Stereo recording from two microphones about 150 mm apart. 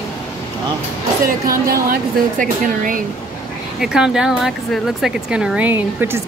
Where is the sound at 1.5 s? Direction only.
75° right (ahead or behind).